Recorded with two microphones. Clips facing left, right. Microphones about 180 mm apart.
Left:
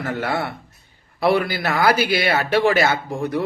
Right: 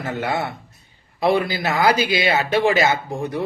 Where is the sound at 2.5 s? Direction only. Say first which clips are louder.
Left 1 dB; 15° right (ahead or behind).